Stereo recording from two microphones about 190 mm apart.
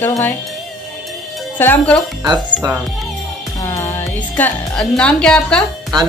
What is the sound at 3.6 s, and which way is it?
Music, 15° left (ahead or behind).